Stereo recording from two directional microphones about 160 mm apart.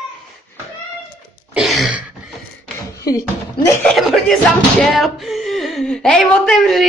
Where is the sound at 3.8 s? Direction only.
Centre (ahead or behind).